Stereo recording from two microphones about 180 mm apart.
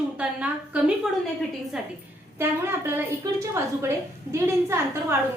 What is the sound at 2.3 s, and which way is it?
A woman's voice, 15° right (ahead or behind).